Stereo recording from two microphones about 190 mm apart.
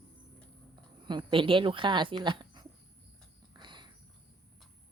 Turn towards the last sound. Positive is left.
turn(degrees=-25)  # may be behind; listen again after turning